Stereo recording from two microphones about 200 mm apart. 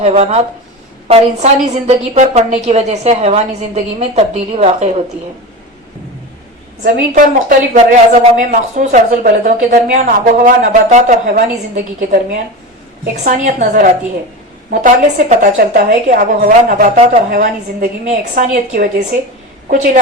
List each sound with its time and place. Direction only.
0.0 s a woman's voice: 35° right (ahead or behind)
6.8 s a woman's voice: 45° right (ahead or behind)